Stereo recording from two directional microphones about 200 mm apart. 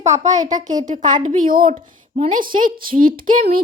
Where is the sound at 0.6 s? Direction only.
40° right (ahead or behind).